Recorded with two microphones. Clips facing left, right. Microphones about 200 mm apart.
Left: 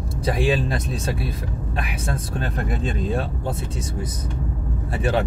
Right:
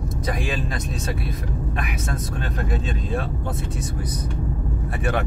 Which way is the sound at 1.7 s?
30° left (ahead or behind).